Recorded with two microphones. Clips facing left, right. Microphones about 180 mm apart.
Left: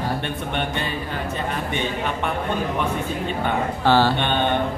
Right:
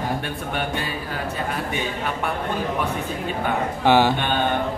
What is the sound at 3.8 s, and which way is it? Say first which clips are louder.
Speech: right 1 dB; 15° right (ahead or behind).